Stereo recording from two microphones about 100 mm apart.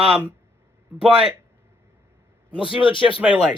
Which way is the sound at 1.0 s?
10° right (ahead or behind).